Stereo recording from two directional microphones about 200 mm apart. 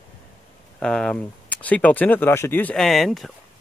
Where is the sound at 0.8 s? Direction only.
5° left (ahead or behind).